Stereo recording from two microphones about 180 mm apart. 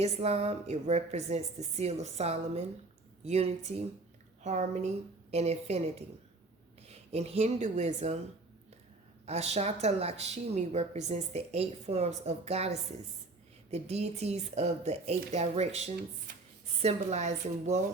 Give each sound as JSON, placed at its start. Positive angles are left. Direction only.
{"t": 0.0, "sound": "speech", "side_deg": -35}
{"t": 9.2, "sound": "speech", "side_deg": -35}
{"t": 16.8, "sound": "speech", "side_deg": -40}